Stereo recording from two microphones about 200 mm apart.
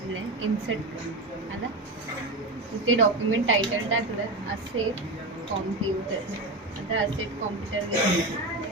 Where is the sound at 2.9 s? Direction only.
80° right.